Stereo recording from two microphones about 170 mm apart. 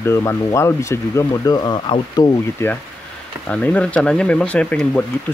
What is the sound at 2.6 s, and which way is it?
Speech, 15° left (ahead or behind).